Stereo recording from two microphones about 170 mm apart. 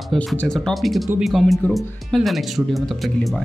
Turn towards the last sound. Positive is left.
turn(degrees=0)  # may be behind; listen again after turning